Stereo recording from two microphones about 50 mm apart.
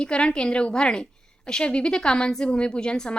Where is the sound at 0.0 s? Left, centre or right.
Centre.